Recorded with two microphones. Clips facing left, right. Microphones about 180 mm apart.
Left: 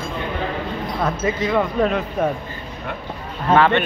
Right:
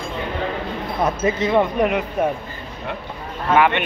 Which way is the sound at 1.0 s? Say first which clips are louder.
Right 2 dB; 20° right (ahead or behind).